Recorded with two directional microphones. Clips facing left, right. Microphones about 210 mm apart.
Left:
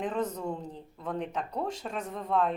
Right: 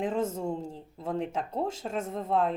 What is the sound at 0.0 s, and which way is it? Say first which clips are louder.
Speech: right 2 dB; 25° right (ahead or behind).